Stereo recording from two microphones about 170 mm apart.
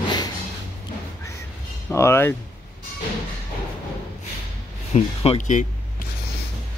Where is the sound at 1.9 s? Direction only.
15° left (ahead or behind).